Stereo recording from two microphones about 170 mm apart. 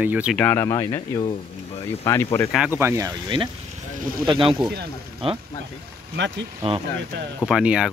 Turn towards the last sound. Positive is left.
turn(degrees=-5)  # may be behind; listen again after turning